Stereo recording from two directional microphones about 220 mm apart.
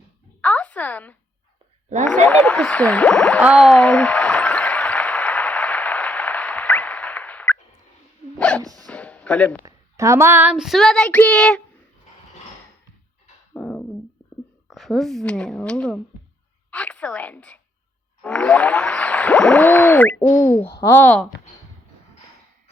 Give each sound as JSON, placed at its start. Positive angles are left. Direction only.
{"t": 0.4, "sound": "a sound", "side_deg": 5}
{"t": 2.0, "sound": "female singing", "side_deg": 5}
{"t": 3.4, "sound": "a sound", "side_deg": 0}
{"t": 8.4, "sound": "dog", "side_deg": 5}
{"t": 8.6, "sound": "dog", "side_deg": -15}
{"t": 8.9, "sound": "a sound", "side_deg": 5}
{"t": 9.6, "sound": "female singing", "side_deg": -15}
{"t": 13.5, "sound": "dog", "side_deg": 5}
{"t": 14.7, "sound": "female singing", "side_deg": 0}
{"t": 16.7, "sound": "a woman's voice", "side_deg": 5}
{"t": 18.2, "sound": "a sound", "side_deg": 5}
{"t": 20.3, "sound": "speech", "side_deg": 10}